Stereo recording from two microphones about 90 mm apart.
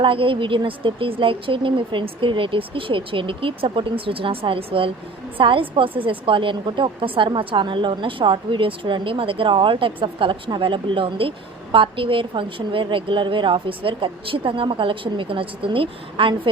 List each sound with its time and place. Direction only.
0.0 s a woman's voice: 75° right (ahead or behind)